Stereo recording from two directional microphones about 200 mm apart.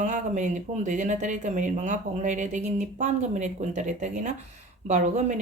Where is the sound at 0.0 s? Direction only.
35° right (ahead or behind).